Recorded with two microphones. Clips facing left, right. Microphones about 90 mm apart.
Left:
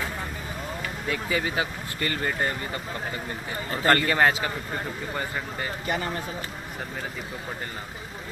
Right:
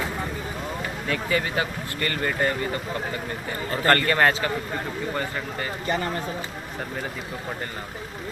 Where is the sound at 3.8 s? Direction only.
15° left (ahead or behind).